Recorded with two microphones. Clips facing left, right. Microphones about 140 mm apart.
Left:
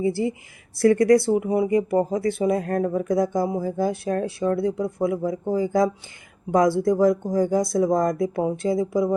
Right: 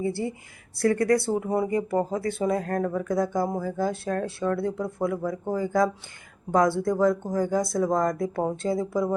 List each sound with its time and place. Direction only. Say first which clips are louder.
0.8 s speech: left 6 dB; 20° left (ahead or behind)